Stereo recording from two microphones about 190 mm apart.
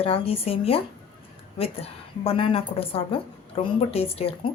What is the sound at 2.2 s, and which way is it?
A woman's voice, 30° left (ahead or behind).